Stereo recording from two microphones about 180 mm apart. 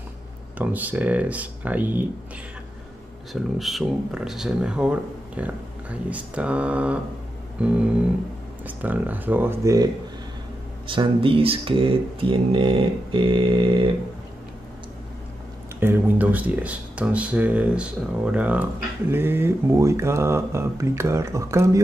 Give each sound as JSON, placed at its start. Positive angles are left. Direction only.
{"t": 0.6, "sound": "speech", "side_deg": -10}
{"t": 3.5, "sound": "speech", "side_deg": 0}
{"t": 10.9, "sound": "speech", "side_deg": -30}
{"t": 15.8, "sound": "speech", "side_deg": -10}